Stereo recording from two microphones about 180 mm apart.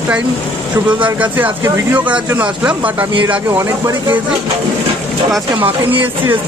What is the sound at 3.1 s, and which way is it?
Speech, 25° right (ahead or behind).